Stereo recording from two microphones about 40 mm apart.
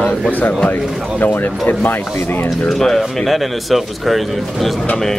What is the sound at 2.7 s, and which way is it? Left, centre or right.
Speech, centre.